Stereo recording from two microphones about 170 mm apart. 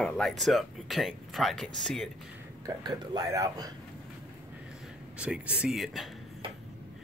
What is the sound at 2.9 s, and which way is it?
Speech, 25° right (ahead or behind).